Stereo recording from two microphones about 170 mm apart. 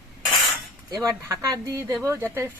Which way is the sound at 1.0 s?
20° right (ahead or behind).